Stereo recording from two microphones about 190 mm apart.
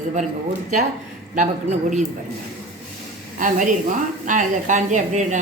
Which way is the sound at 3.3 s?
45° right (ahead or behind).